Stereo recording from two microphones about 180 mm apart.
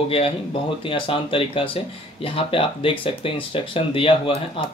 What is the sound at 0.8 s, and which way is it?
Speech, 30° left (ahead or behind).